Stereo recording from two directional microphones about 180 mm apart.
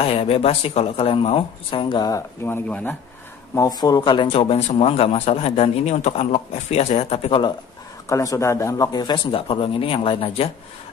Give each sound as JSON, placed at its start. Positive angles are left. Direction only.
{"t": 0.0, "sound": "speech", "side_deg": 30}
{"t": 3.5, "sound": "speech", "side_deg": 20}
{"t": 8.1, "sound": "speech", "side_deg": 15}